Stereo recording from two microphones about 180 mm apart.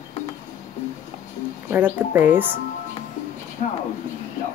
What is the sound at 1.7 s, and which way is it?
Speech, 10° right (ahead or behind).